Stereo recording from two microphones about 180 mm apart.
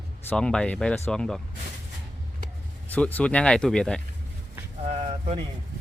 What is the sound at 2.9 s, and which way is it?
Speech, 10° left (ahead or behind).